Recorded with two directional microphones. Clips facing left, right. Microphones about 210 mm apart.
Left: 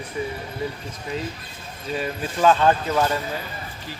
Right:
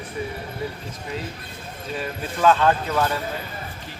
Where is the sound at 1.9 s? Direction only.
Centre (ahead or behind).